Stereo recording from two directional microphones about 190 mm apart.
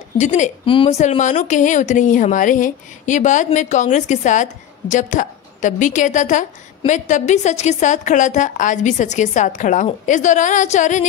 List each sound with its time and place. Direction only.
0.2 s a woman's voice: 40° left (ahead or behind)